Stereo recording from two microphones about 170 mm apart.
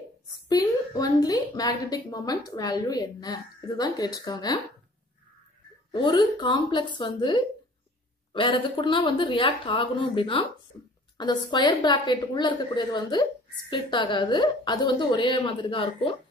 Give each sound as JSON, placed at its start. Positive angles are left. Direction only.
{"t": 0.5, "sound": "a woman's voice", "side_deg": 25}
{"t": 5.9, "sound": "a woman's voice", "side_deg": 30}